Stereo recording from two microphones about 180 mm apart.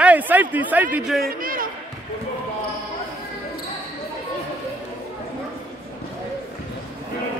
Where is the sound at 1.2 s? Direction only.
50° right (ahead or behind).